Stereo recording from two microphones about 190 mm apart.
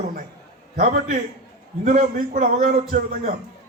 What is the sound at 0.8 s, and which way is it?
A man's voice, 45° right (ahead or behind).